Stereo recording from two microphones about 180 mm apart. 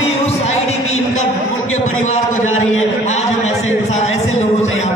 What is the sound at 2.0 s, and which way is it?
Speech, 40° left (ahead or behind).